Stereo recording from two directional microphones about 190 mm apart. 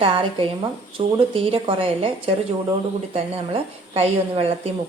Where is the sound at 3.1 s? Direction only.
30° right (ahead or behind).